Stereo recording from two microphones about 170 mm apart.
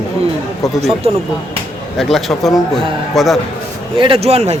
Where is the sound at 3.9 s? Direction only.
30° right (ahead or behind).